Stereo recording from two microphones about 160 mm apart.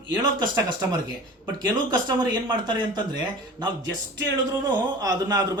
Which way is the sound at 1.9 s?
25° right (ahead or behind).